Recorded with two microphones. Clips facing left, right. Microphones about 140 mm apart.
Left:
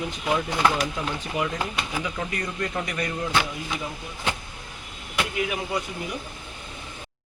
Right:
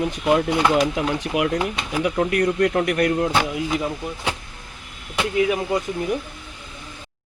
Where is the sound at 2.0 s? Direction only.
60° right (ahead or behind).